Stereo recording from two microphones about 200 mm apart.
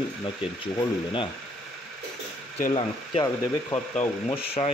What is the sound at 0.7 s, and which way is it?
Speech, 25° left (ahead or behind).